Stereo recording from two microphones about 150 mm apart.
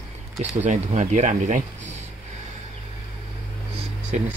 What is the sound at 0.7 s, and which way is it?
Speech, 55° right (ahead or behind).